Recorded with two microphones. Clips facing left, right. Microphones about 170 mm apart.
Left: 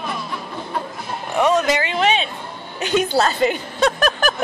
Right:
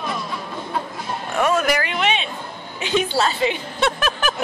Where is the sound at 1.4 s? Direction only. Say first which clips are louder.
Left 2 dB; 20° left (ahead or behind); by 4.3 s 40° left (ahead or behind).